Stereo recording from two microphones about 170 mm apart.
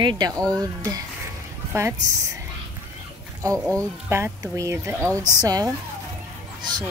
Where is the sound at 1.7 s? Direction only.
15° right (ahead or behind).